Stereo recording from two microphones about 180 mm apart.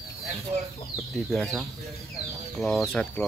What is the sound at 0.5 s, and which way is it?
Speech, 35° right (ahead or behind).